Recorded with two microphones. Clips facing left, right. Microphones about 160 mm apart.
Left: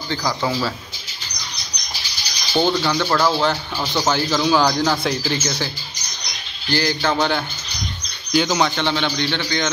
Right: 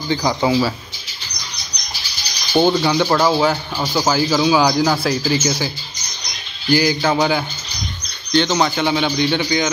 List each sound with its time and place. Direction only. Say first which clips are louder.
0.1 s speech: right 5 dB; 20° right (ahead or behind)
2.5 s speech: right 4 dB; 15° right (ahead or behind)
6.7 s speech: right 4 dB; 10° right (ahead or behind)
8.3 s speech: right 2 dB; 5° left (ahead or behind); by 9.7 s 10° right (ahead or behind)